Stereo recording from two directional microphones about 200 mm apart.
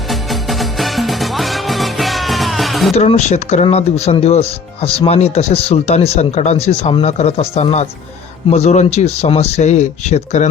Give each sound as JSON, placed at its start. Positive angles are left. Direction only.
{"t": 0.1, "sound": "music", "side_deg": 0}
{"t": 2.9, "sound": "speech", "side_deg": 35}